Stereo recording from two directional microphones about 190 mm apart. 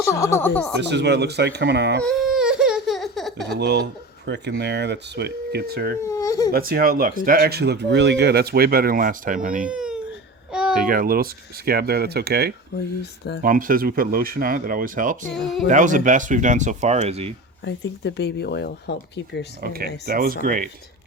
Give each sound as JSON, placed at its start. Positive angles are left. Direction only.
{"t": 0.1, "sound": "speech", "side_deg": 15}
{"t": 0.8, "sound": "speech", "side_deg": -65}
{"t": 2.0, "sound": "baby cry", "side_deg": 0}
{"t": 3.6, "sound": "speech", "side_deg": -60}
{"t": 6.0, "sound": "baby cry", "side_deg": 15}
{"t": 6.5, "sound": "speech", "side_deg": -50}
{"t": 9.6, "sound": "baby cry", "side_deg": -5}
{"t": 10.5, "sound": "babbling", "side_deg": -5}
{"t": 10.8, "sound": "speech", "side_deg": -50}
{"t": 13.0, "sound": "speech", "side_deg": 60}
{"t": 13.4, "sound": "speech", "side_deg": -45}
{"t": 17.6, "sound": "speech", "side_deg": 70}
{"t": 19.6, "sound": "speech", "side_deg": -50}